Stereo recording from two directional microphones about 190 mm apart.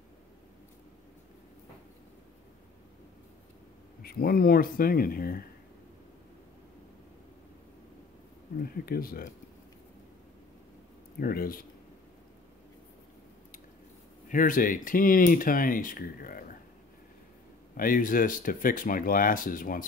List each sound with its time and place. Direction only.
4.0 s speech: 55° left (ahead or behind)
8.8 s speech: 50° left (ahead or behind)
11.1 s speech: 50° left (ahead or behind)
14.3 s speech: 45° left (ahead or behind)
17.7 s speech: 45° left (ahead or behind)